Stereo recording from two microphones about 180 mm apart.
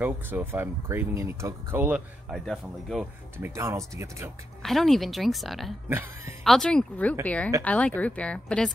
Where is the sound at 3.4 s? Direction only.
15° right (ahead or behind).